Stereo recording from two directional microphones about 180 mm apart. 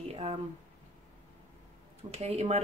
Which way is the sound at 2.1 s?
35° right (ahead or behind).